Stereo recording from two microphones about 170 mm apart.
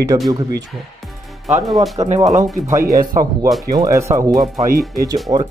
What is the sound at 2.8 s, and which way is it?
Speech, 60° right (ahead or behind).